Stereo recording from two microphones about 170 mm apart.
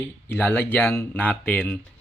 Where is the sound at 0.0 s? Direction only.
10° left (ahead or behind).